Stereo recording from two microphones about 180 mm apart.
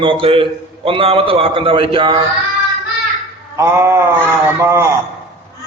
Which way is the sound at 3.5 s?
15° right (ahead or behind).